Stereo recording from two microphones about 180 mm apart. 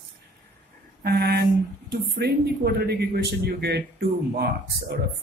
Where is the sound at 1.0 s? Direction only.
65° right (ahead or behind).